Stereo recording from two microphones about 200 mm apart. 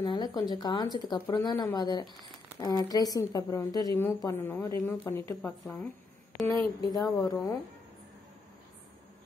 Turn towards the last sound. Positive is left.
turn(degrees=20)  # may be behind; listen again after turning